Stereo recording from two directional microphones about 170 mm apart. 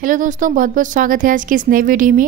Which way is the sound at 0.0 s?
50° right (ahead or behind).